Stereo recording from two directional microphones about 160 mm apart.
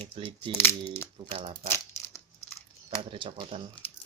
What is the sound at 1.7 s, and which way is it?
Crushing, 15° left (ahead or behind).